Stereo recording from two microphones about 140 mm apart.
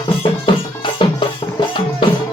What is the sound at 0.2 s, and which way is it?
Music, 40° left (ahead or behind).